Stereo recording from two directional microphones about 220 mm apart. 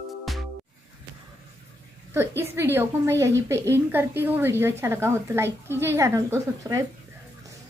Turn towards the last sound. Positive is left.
turn(degrees=-10)  # may be behind; listen again after turning